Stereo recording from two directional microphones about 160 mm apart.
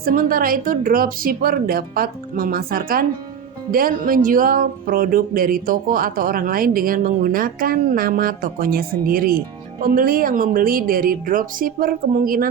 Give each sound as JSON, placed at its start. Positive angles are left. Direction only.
{"t": 0.0, "sound": "speech", "side_deg": -65}